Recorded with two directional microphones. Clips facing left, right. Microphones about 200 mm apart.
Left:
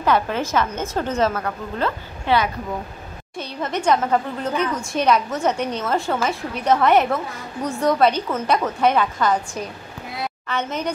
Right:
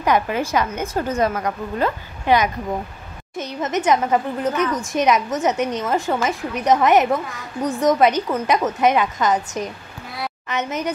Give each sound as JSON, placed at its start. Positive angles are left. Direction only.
{"t": 0.0, "sound": "a woman's voice", "side_deg": -15}
{"t": 10.5, "sound": "a woman's voice", "side_deg": -10}